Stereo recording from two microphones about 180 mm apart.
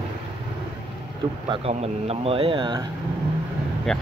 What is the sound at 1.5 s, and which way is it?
Speech, 35° right (ahead or behind).